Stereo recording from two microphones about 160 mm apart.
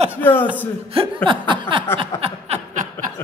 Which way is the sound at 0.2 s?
10° left (ahead or behind).